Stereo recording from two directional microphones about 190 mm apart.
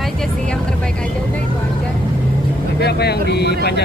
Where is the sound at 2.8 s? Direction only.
60° left (ahead or behind).